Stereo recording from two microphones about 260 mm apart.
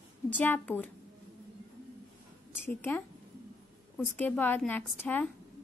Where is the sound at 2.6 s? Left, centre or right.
Centre.